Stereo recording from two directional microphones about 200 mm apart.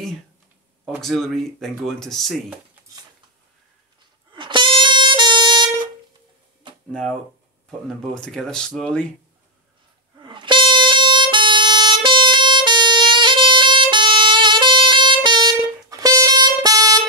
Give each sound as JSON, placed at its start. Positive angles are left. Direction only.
{"t": 0.8, "sound": "speech", "side_deg": 0}
{"t": 4.3, "sound": "music", "side_deg": -25}
{"t": 6.9, "sound": "speech", "side_deg": 5}
{"t": 10.2, "sound": "music", "side_deg": -25}